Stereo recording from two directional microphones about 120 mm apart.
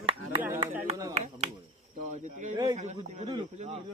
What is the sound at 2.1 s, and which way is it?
Speech, 90° right.